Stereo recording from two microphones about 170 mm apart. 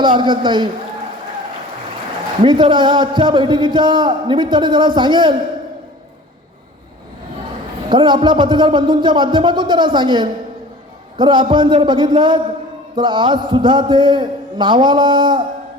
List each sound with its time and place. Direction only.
0.0 s a man's voice: 25° right (ahead or behind)
2.4 s a man's voice: 30° right (ahead or behind)
7.9 s a man's voice: 25° right (ahead or behind)